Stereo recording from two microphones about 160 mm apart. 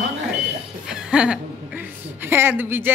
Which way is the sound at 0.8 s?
5° right (ahead or behind).